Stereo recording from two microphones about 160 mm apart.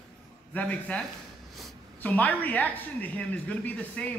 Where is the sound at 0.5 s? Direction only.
10° left (ahead or behind).